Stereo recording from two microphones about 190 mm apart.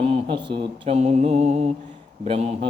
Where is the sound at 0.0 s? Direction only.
30° right (ahead or behind).